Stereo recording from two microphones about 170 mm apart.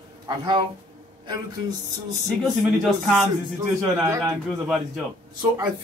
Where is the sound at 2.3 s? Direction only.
Centre (ahead or behind).